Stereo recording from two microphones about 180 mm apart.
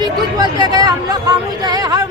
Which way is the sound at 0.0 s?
25° right (ahead or behind).